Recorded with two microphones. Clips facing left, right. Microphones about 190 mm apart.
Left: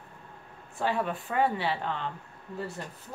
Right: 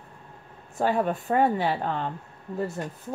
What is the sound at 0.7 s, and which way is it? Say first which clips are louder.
Speech: right 5 dB; 45° right (ahead or behind).